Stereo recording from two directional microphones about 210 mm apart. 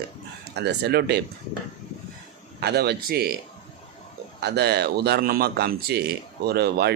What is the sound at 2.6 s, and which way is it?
Speech, 50° right (ahead or behind).